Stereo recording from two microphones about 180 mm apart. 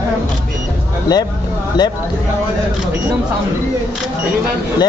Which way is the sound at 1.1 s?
20° left (ahead or behind).